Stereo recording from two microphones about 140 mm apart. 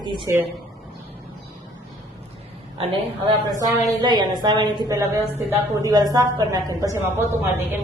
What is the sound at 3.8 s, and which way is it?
A woman's voice, 30° right (ahead or behind).